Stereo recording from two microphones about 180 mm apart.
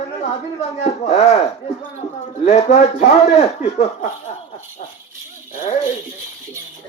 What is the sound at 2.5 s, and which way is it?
Speech, 35° left (ahead or behind).